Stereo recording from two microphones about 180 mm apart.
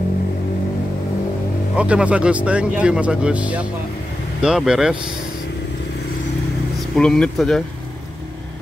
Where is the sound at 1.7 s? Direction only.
5° right (ahead or behind).